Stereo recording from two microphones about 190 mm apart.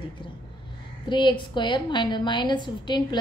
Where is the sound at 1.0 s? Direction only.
25° left (ahead or behind).